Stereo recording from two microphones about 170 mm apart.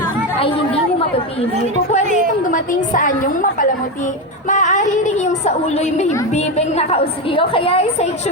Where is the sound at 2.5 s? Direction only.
50° left (ahead or behind).